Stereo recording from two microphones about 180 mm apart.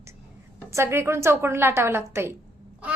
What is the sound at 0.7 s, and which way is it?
A woman's voice, 15° right (ahead or behind).